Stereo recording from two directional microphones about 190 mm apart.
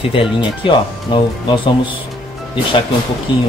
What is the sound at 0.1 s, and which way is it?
Speech, 25° left (ahead or behind).